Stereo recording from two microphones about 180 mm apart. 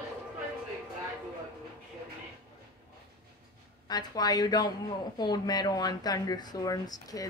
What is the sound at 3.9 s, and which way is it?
Speech, 20° left (ahead or behind).